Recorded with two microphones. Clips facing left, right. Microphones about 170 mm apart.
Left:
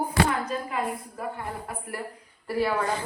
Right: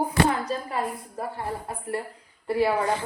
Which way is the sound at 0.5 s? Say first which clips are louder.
Right 1 dB; 35° right (ahead or behind).